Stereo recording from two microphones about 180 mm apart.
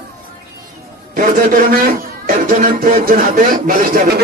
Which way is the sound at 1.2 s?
45° right (ahead or behind).